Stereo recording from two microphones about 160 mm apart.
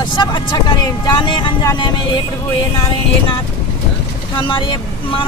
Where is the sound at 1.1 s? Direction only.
30° left (ahead or behind).